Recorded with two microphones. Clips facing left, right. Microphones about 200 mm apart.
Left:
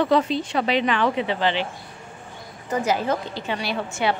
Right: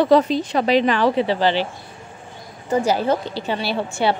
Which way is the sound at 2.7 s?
30° right (ahead or behind).